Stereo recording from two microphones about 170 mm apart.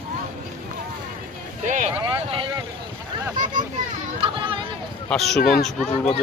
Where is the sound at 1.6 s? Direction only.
45° right (ahead or behind).